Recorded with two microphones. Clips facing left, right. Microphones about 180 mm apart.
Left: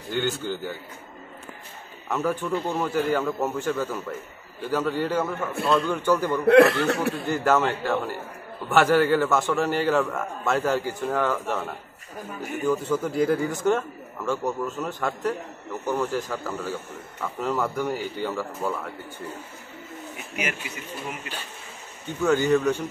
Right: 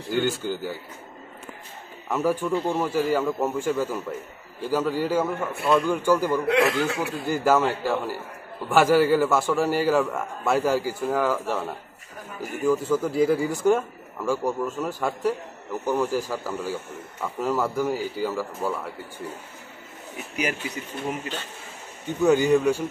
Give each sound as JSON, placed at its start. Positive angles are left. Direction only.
{"t": 0.2, "sound": "a man's voice", "side_deg": -10}
{"t": 2.0, "sound": "a man's voice", "side_deg": -10}
{"t": 6.4, "sound": "speech", "side_deg": 60}
{"t": 7.2, "sound": "a man's voice", "side_deg": -10}
{"t": 20.3, "sound": "speech", "side_deg": -35}
{"t": 22.2, "sound": "a man's voice", "side_deg": -15}